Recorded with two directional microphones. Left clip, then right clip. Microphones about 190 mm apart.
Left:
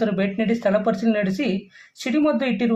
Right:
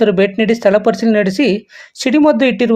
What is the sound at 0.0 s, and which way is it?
A woman's voice, 35° right (ahead or behind).